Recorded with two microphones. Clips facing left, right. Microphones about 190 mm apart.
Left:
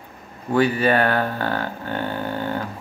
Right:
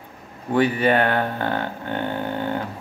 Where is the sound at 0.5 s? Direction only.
20° right (ahead or behind).